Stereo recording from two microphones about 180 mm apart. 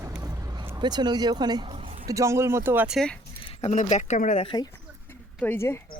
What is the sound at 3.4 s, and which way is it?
Speech, 35° left (ahead or behind).